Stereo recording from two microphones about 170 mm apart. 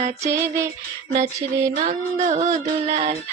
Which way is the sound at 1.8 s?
45° right (ahead or behind).